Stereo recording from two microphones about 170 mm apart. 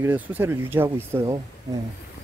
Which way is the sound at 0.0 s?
10° right (ahead or behind).